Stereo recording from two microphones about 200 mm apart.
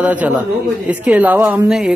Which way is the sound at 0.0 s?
5° right (ahead or behind).